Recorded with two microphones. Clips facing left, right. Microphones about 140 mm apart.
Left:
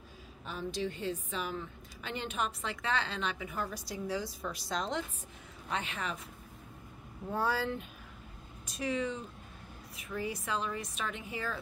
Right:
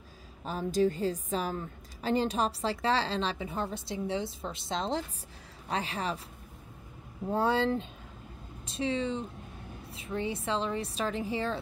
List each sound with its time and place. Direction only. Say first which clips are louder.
0.5 s a woman's voice: right 9 dB; 45° right (ahead or behind)
7.2 s speech: right 5 dB; 25° right (ahead or behind)